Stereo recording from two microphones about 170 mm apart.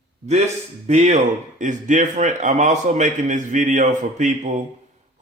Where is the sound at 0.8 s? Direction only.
45° right (ahead or behind).